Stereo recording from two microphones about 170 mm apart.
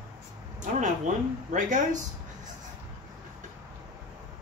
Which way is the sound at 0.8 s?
45° right (ahead or behind).